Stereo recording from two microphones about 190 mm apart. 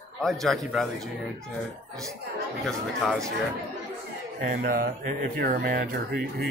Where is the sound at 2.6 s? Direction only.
5° left (ahead or behind).